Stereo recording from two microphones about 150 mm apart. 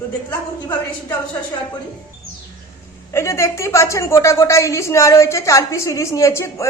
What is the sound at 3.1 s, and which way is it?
A woman's voice, 20° left (ahead or behind).